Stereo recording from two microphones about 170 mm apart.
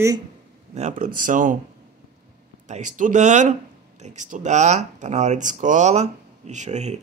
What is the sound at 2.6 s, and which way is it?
Speech, 45° right (ahead or behind).